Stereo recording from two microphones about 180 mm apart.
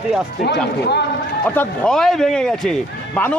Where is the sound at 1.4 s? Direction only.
10° left (ahead or behind).